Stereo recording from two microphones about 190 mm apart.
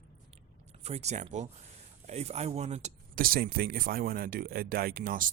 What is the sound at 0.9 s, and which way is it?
Speech, 35° right (ahead or behind).